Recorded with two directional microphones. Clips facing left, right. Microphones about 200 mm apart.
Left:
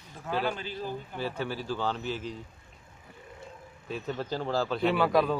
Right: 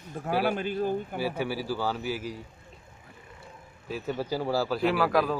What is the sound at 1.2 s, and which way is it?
A man's voice, 10° right (ahead or behind).